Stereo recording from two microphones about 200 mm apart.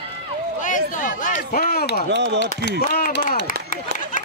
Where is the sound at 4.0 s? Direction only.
40° left (ahead or behind).